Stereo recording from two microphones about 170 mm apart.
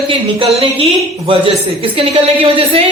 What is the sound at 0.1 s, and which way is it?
Speech, 30° right (ahead or behind).